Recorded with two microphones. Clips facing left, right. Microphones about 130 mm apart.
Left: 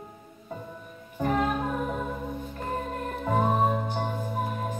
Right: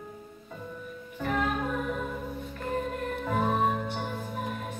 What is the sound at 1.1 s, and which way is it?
Music, 35° left (ahead or behind).